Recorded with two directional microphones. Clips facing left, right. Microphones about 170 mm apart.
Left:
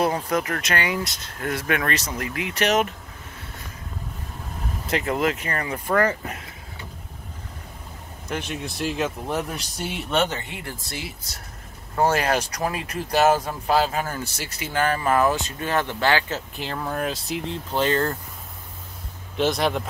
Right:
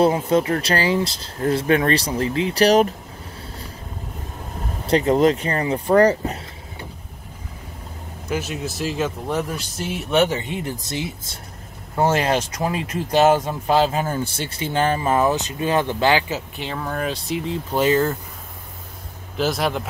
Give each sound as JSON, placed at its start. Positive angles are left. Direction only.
{"t": 0.0, "sound": "speech", "side_deg": -25}
{"t": 4.8, "sound": "speech", "side_deg": -30}
{"t": 8.3, "sound": "speech", "side_deg": -5}
{"t": 10.4, "sound": "speech", "side_deg": -20}
{"t": 19.3, "sound": "speech", "side_deg": 0}